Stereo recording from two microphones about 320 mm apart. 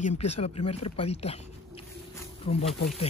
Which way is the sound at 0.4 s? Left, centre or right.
Centre.